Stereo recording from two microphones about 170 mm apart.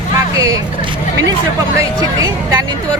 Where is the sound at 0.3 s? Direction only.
20° right (ahead or behind).